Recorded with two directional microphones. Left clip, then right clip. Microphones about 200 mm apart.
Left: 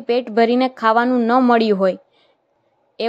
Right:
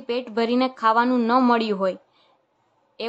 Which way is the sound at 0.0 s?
20° left (ahead or behind).